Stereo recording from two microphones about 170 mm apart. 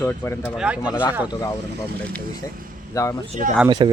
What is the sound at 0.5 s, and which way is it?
Speech, 5° right (ahead or behind).